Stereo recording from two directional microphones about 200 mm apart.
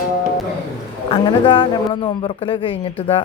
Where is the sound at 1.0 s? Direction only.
25° left (ahead or behind).